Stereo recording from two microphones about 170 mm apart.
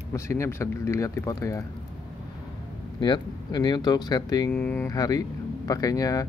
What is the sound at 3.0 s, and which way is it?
Speech, 25° left (ahead or behind).